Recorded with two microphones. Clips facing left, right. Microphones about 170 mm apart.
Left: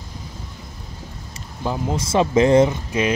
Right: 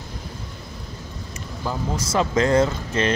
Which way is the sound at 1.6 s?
20° left (ahead or behind).